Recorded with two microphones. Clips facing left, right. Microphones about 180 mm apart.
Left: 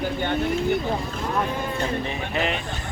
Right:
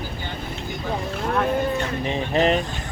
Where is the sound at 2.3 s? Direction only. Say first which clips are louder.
Right 7 dB; 40° right (ahead or behind).